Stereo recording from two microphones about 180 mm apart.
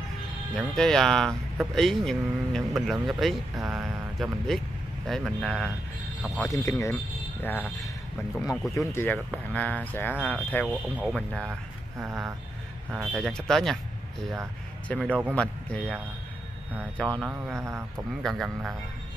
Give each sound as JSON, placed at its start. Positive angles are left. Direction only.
{"t": 0.6, "sound": "speech", "side_deg": 0}
{"t": 6.5, "sound": "speech", "side_deg": 15}
{"t": 12.0, "sound": "speech", "side_deg": -15}
{"t": 12.9, "sound": "speech", "side_deg": 0}
{"t": 14.9, "sound": "speech", "side_deg": 5}
{"t": 17.0, "sound": "speech", "side_deg": 5}
{"t": 17.6, "sound": "speech", "side_deg": -15}
{"t": 18.2, "sound": "speech", "side_deg": 0}